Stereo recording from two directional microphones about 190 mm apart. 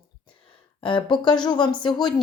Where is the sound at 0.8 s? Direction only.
25° left (ahead or behind).